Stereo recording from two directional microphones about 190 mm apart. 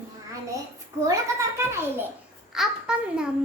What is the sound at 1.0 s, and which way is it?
Child singing, 15° right (ahead or behind).